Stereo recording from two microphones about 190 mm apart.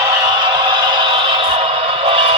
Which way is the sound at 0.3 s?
25° right (ahead or behind).